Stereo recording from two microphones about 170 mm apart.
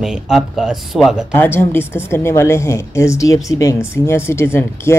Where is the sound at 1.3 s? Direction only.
15° left (ahead or behind).